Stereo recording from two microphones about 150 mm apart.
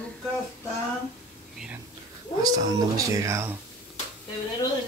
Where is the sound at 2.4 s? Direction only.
25° right (ahead or behind).